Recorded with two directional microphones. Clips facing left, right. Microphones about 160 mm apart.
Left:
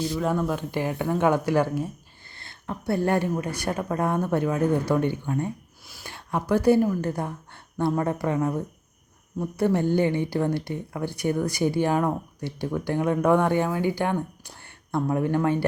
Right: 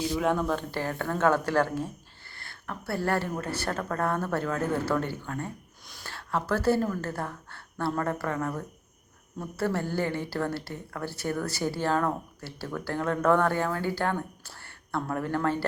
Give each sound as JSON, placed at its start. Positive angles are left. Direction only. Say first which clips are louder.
{"t": 0.2, "sound": "a woman's voice", "louder": "even", "side_deg": 5}
{"t": 5.8, "sound": "a sound", "louder": "left 2 dB", "side_deg": 5}
{"t": 6.1, "sound": "a woman's voice", "louder": "left 4 dB", "side_deg": 15}